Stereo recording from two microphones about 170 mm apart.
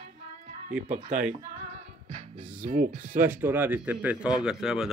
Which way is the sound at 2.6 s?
50° right (ahead or behind).